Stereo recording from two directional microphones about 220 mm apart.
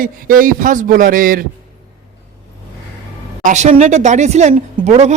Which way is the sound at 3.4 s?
30° right (ahead or behind).